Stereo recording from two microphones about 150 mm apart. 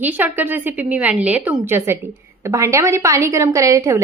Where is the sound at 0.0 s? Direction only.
10° right (ahead or behind).